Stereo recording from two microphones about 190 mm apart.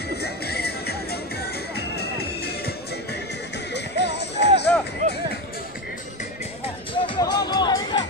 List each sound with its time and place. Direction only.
0.2 s music: 55° left (ahead or behind)
3.7 s music: 65° left (ahead or behind)
4.7 s music: 5° left (ahead or behind)
6.9 s music: 20° left (ahead or behind)